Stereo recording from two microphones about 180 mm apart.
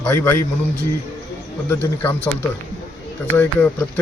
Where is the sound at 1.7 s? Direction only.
10° left (ahead or behind).